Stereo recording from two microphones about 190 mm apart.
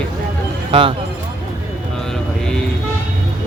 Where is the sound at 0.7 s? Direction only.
30° right (ahead or behind).